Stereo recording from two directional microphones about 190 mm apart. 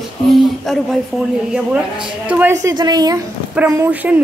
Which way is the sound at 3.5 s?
10° right (ahead or behind).